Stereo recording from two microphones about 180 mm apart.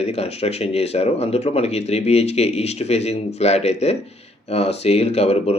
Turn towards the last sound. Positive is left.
turn(degrees=35)  # may be behind; listen again after turning